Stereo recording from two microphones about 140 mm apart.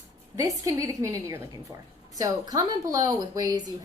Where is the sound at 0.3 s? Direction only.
25° right (ahead or behind).